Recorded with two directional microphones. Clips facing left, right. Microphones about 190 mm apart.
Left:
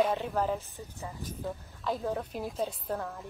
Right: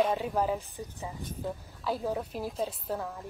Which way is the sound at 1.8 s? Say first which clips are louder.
Right 1 dB; 5° right (ahead or behind).